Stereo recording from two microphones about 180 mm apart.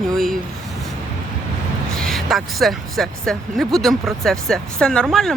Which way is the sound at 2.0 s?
Centre (ahead or behind).